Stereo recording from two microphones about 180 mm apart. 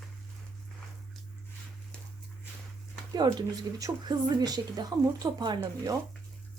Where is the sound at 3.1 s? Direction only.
20° right (ahead or behind).